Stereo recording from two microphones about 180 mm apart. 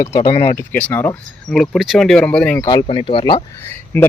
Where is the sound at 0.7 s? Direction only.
10° left (ahead or behind).